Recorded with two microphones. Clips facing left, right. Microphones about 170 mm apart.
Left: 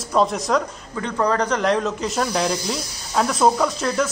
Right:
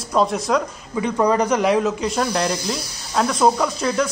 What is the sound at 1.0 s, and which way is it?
A man's voice, 10° right (ahead or behind).